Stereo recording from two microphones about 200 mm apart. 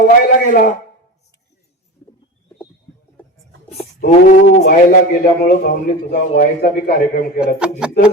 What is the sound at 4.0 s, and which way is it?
Speech, 45° left (ahead or behind).